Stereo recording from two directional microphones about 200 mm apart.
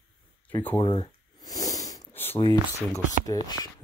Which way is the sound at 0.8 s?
25° left (ahead or behind).